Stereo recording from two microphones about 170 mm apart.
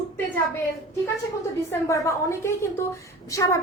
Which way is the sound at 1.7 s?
15° left (ahead or behind).